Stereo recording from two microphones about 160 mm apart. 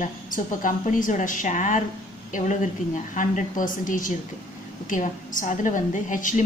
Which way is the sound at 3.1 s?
55° left (ahead or behind).